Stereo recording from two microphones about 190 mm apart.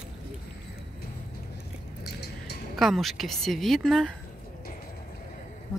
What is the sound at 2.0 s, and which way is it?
Music, 60° left (ahead or behind).